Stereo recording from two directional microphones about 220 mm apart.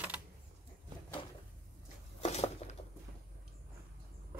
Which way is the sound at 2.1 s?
30° left (ahead or behind).